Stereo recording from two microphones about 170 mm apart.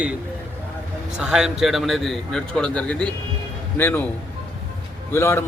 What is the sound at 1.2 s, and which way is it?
A man's voice, 5° right (ahead or behind).